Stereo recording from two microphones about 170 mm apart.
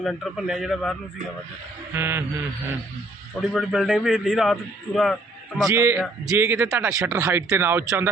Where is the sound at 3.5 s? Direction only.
Centre (ahead or behind).